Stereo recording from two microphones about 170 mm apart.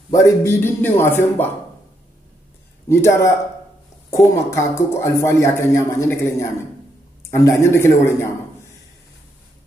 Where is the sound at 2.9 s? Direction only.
15° left (ahead or behind).